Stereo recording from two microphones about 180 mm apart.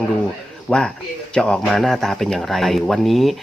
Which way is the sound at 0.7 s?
5° left (ahead or behind).